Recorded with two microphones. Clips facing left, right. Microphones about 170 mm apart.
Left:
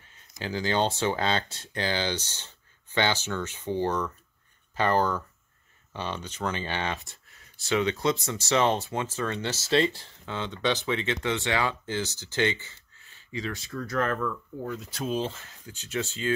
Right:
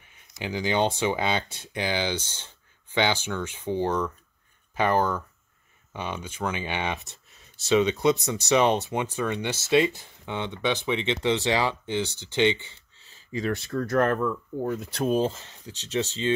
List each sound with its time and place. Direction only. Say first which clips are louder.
0.0 s speech: right 1 dB; 15° right (ahead or behind)
13.3 s speech: right 6 dB; 55° right (ahead or behind)
14.1 s speech: right 4 dB; 35° right (ahead or behind)
14.8 s speech: right 6 dB; 55° right (ahead or behind)
15.7 s speech: right 3 dB; 25° right (ahead or behind)